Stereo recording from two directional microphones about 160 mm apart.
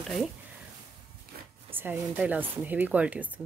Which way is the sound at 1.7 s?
15° right (ahead or behind).